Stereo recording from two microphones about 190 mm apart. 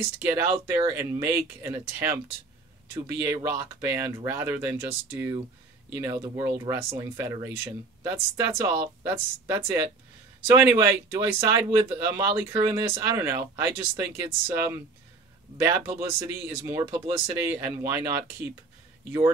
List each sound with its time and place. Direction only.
0.2 s speech: 15° right (ahead or behind)